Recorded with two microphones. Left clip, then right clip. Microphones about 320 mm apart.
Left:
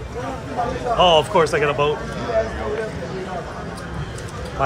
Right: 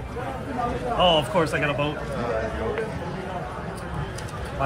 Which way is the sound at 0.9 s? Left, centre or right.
Left.